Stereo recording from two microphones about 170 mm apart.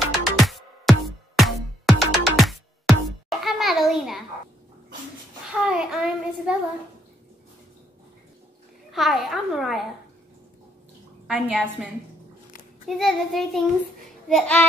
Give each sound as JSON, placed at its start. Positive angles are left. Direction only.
{"t": 0.4, "sound": "music", "side_deg": 0}
{"t": 5.5, "sound": "child singing", "side_deg": -5}
{"t": 8.9, "sound": "a woman's voice", "side_deg": 0}
{"t": 11.2, "sound": "a woman's voice", "side_deg": -5}
{"t": 14.3, "sound": "child singing", "side_deg": 5}